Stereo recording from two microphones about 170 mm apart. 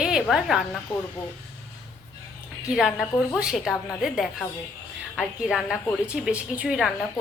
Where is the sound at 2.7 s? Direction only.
5° right (ahead or behind).